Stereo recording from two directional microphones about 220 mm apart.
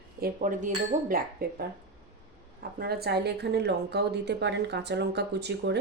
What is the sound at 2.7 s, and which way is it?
Speech, 45° right (ahead or behind).